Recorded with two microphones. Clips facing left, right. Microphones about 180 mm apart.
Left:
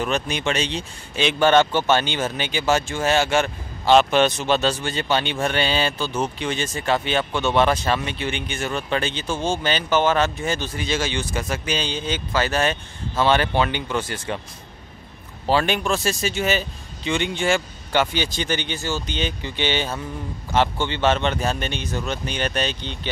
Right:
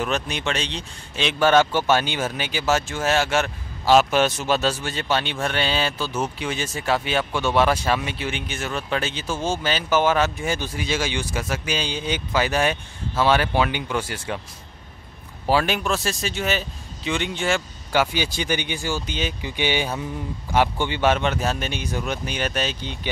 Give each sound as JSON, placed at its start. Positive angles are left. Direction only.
{"t": 0.0, "sound": "speech", "side_deg": 0}
{"t": 15.4, "sound": "speech", "side_deg": -5}